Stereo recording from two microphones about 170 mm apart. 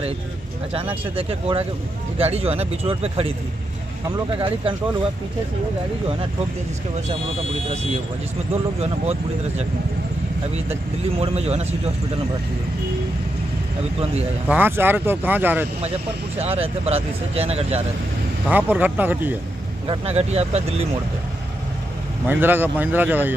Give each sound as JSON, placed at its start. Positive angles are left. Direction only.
{"t": 1.1, "sound": "speech", "side_deg": -35}
{"t": 8.7, "sound": "speech", "side_deg": -35}
{"t": 11.1, "sound": "speech", "side_deg": -35}
{"t": 14.5, "sound": "speech", "side_deg": -10}
{"t": 16.3, "sound": "speech", "side_deg": -35}
{"t": 18.5, "sound": "speech", "side_deg": -10}
{"t": 19.9, "sound": "speech", "side_deg": -35}
{"t": 22.2, "sound": "speech", "side_deg": -10}